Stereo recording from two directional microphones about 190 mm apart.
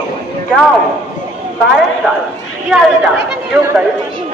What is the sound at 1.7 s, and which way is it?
A man's voice, centre (ahead or behind).